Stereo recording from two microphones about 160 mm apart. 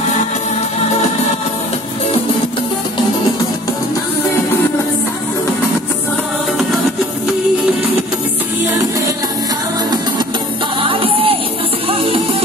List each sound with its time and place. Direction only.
10.8 s music: 35° right (ahead or behind)